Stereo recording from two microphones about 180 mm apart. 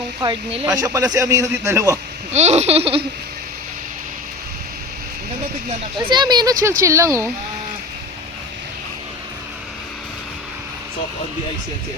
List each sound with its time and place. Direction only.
0.2 s a man's voice: 30° right (ahead or behind)
2.3 s a sound: 40° right (ahead or behind)
6.0 s speech: 25° right (ahead or behind)